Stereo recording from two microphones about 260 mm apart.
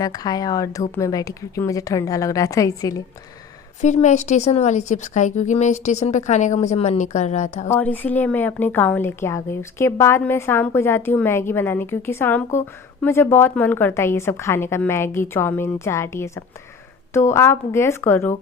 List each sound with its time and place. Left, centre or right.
0.0 s a woman's voice: centre
3.8 s a woman's voice: left
7.7 s a woman's voice: centre